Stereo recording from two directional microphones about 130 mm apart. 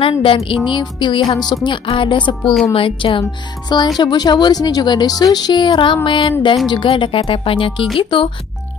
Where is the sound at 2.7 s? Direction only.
40° left (ahead or behind).